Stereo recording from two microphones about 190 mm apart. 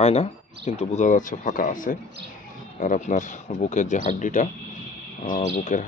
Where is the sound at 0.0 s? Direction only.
35° left (ahead or behind).